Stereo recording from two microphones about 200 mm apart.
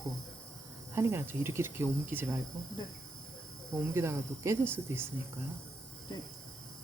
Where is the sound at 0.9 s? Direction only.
10° right (ahead or behind).